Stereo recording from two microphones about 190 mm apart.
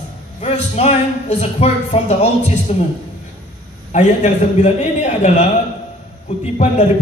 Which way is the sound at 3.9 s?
40° left (ahead or behind).